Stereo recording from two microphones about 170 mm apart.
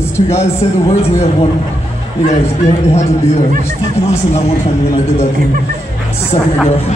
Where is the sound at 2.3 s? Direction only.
40° left (ahead or behind).